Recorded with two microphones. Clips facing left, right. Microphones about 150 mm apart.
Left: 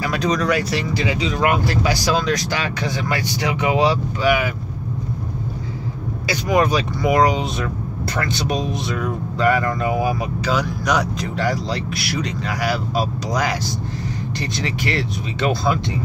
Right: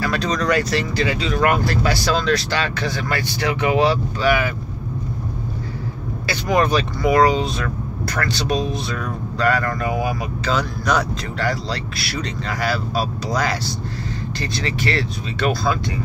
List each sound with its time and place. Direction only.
0.0 s speech: 15° left (ahead or behind)
6.2 s speech: 10° left (ahead or behind)
10.4 s speech: 10° left (ahead or behind)